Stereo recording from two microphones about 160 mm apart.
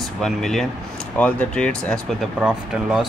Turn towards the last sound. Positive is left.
turn(degrees=-5)  # may be behind; listen again after turning